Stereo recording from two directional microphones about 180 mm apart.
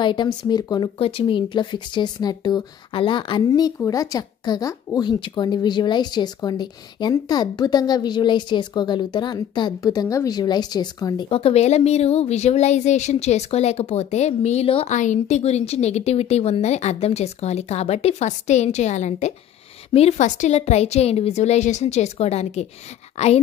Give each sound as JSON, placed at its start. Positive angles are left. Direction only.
{"t": 0.0, "sound": "a woman's voice", "side_deg": 25}